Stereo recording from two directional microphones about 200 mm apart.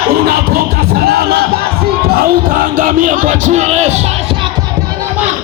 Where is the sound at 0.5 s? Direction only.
50° right (ahead or behind); by 4.0 s 35° right (ahead or behind).